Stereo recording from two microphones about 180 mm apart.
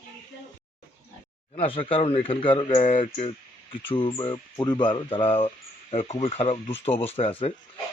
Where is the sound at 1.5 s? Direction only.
30° left (ahead or behind).